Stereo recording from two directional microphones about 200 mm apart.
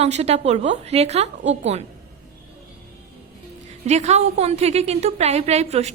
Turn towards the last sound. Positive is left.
turn(degrees=-30)  # may be behind; listen again after turning